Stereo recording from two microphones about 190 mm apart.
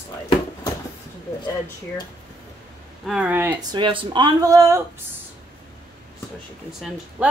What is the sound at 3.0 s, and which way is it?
Speech, 5° right (ahead or behind).